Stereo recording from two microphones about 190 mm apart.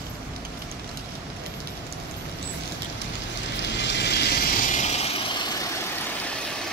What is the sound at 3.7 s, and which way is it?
Vehicle, 65° left (ahead or behind).